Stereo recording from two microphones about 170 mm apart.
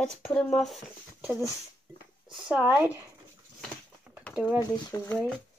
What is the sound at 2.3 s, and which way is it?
Speech, 5° right (ahead or behind).